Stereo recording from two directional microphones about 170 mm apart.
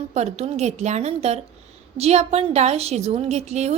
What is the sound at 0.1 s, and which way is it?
A woman's voice, 40° right (ahead or behind).